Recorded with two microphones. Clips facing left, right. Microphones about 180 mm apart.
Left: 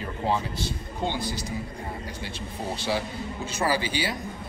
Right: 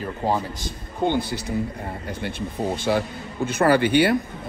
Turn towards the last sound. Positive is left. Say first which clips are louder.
# right 9 dB
turn(degrees=-60)  # may be behind; listen again after turning